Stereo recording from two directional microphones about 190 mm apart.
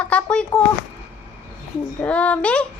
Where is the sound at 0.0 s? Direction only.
5° left (ahead or behind).